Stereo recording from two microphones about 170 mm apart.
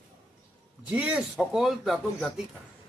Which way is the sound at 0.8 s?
10° right (ahead or behind).